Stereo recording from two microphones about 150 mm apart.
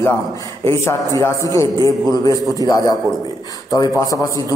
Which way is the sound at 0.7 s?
20° left (ahead or behind).